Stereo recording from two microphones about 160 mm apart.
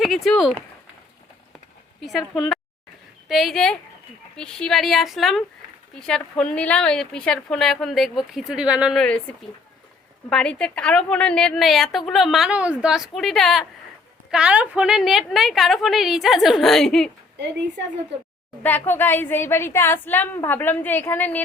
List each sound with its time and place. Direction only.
0.0 s a woman's voice: centre (ahead or behind)
2.0 s a woman's voice: centre (ahead or behind)
9.0 s a woman's voice: 5° left (ahead or behind)
18.6 s a woman's voice: 10° left (ahead or behind)